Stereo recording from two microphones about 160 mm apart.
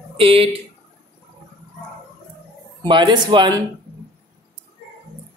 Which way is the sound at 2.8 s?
30° right (ahead or behind).